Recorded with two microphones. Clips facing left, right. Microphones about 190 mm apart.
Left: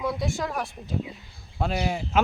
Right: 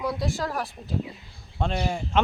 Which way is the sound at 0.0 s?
Centre (ahead or behind).